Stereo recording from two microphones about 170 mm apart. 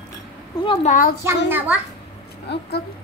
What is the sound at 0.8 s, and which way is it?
Speech, 50° left (ahead or behind).